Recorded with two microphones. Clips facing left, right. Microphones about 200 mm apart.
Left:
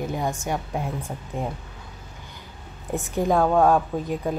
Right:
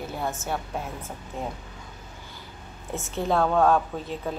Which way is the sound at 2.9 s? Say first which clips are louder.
Left 4 dB; 15° left (ahead or behind).